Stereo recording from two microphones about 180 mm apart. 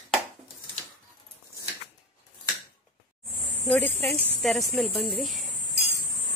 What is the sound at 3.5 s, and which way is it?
Speech, 10° left (ahead or behind).